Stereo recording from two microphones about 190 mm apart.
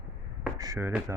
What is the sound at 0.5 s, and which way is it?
Speech, 15° right (ahead or behind).